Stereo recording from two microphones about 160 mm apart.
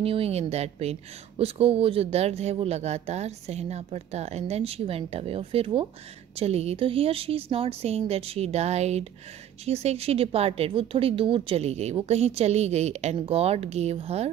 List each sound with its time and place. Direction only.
0.0 s speech: 35° right (ahead or behind)